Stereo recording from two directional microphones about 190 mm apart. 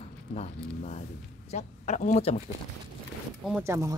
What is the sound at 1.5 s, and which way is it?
Speech, 35° left (ahead or behind).